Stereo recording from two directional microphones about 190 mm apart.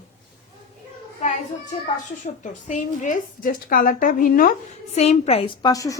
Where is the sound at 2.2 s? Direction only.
40° left (ahead or behind).